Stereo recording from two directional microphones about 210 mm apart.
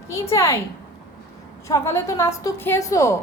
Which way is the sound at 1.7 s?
15° left (ahead or behind).